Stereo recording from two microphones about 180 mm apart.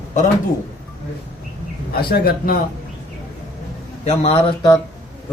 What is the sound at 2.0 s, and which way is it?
Speech, 60° left (ahead or behind).